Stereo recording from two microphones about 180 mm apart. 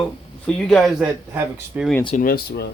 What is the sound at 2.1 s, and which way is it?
Speech, 55° left (ahead or behind).